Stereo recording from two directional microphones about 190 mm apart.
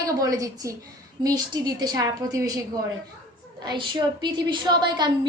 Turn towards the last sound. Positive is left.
turn(degrees=-25)  # may be behind; listen again after turning